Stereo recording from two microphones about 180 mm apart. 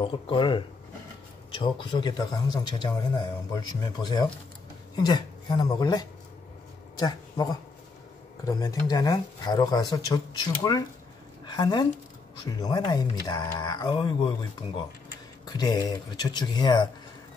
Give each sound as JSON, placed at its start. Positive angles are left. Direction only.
{"t": 0.0, "sound": "speech", "side_deg": 30}
{"t": 15.4, "sound": "speech", "side_deg": 20}